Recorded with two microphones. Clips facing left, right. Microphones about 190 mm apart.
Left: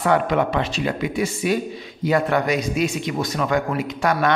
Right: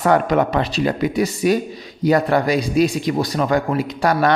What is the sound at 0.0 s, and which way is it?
A man's voice, 40° right (ahead or behind).